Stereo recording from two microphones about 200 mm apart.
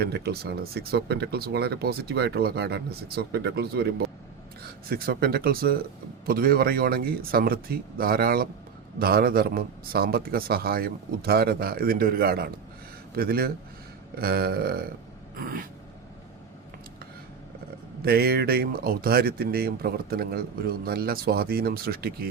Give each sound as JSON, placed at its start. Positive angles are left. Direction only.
{"t": 0.0, "sound": "speech", "side_deg": -55}
{"t": 18.0, "sound": "speech", "side_deg": -50}